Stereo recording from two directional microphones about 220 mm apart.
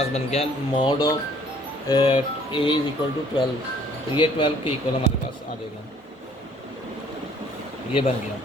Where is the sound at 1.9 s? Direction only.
20° left (ahead or behind).